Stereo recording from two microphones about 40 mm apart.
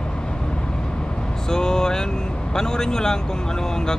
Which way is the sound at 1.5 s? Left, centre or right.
Centre.